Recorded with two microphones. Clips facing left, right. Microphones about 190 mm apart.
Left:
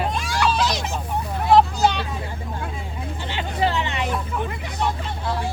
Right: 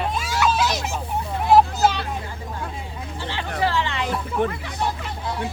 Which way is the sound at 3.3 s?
20° left (ahead or behind).